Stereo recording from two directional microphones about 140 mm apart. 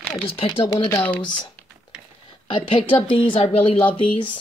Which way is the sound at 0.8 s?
15° left (ahead or behind).